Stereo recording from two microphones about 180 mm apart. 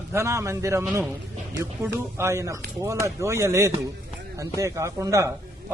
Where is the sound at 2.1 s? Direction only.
15° right (ahead or behind).